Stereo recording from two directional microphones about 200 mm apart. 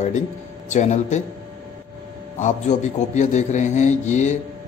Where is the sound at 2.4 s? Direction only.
35° left (ahead or behind).